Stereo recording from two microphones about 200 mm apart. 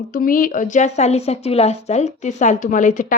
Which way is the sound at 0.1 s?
45° left (ahead or behind).